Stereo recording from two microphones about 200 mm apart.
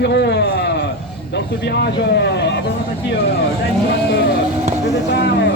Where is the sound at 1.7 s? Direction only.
55° left (ahead or behind).